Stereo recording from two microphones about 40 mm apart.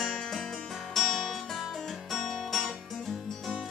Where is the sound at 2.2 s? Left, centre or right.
Centre.